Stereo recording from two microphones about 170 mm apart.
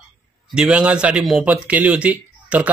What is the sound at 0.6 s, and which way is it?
A man's voice, 5° right (ahead or behind).